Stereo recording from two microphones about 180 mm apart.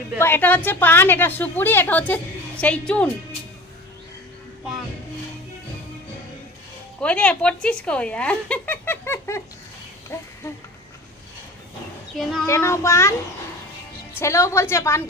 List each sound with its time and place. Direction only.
0.2 s a woman's voice: 10° left (ahead or behind)
7.0 s a woman's voice: 5° left (ahead or behind)
12.2 s speech: centre (ahead or behind)
12.4 s a woman's voice: 15° left (ahead or behind)
14.1 s a woman's voice: 15° left (ahead or behind)